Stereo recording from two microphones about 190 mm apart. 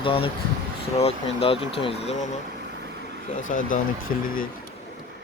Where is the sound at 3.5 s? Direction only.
45° left (ahead or behind).